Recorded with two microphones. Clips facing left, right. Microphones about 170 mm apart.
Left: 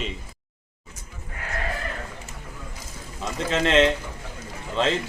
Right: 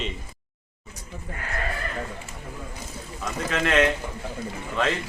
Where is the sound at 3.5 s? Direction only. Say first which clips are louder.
Left 2 dB; 25° left (ahead or behind).